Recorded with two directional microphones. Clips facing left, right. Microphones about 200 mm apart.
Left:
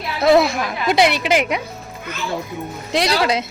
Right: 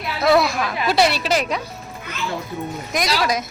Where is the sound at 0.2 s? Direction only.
25° left (ahead or behind).